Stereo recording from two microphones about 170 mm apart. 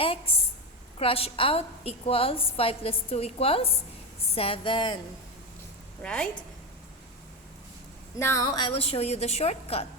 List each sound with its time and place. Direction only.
0.0 s a woman's voice: 30° left (ahead or behind)
6.0 s a woman's voice: 5° left (ahead or behind)
8.2 s a woman's voice: 20° left (ahead or behind); by 9.8 s 35° left (ahead or behind)